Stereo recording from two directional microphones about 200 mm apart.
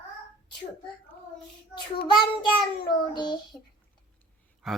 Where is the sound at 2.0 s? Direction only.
20° left (ahead or behind).